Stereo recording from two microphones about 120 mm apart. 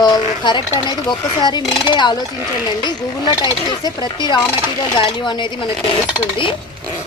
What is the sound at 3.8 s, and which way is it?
Speech, 40° left (ahead or behind).